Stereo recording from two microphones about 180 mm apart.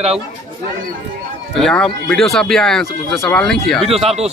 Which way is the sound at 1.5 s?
5° left (ahead or behind).